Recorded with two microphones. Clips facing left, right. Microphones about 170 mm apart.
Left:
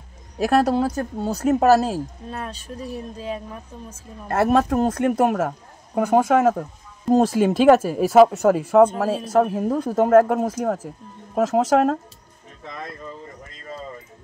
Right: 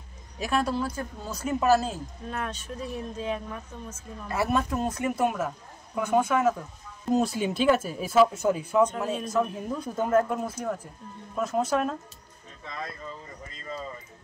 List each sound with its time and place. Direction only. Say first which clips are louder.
0.5 s speech: left 8 dB; 75° left (ahead or behind)
2.3 s speech: left 1 dB; 35° left (ahead or behind)
4.3 s speech: left 8 dB; 80° left
7.2 s speech: left 9 dB; 90° left; by 10.9 s 75° left (ahead or behind)
11.3 s speech: left 8 dB; 90° left